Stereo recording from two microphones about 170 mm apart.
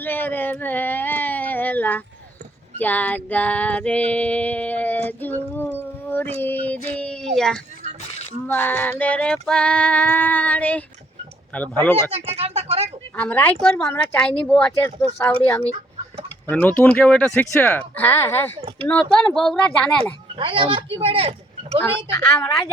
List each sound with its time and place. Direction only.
0.0 s speech: 10° left (ahead or behind)
2.7 s female singing: 10° left (ahead or behind)
5.7 s a sound: 10° left (ahead or behind)
6.4 s speech: 10° left (ahead or behind)
8.4 s female singing: 10° left (ahead or behind)
12.1 s speech: 35° right (ahead or behind)
13.1 s female singing: 10° left (ahead or behind)
19.1 s a woman's voice: centre (ahead or behind)
20.3 s speech: 30° right (ahead or behind)
21.8 s female singing: 10° left (ahead or behind)